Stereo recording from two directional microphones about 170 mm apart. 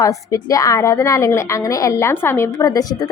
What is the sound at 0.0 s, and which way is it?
A woman's voice, 20° left (ahead or behind).